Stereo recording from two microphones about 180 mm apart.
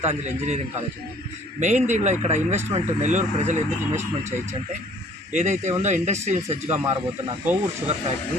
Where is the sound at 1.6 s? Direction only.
40° right (ahead or behind).